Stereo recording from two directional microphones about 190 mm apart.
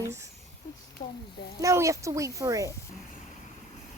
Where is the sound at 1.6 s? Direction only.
15° right (ahead or behind).